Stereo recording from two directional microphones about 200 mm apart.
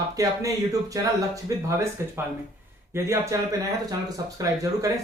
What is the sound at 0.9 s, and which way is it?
Speech, 15° right (ahead or behind).